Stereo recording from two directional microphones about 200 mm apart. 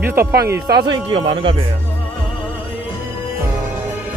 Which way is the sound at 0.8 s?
25° right (ahead or behind).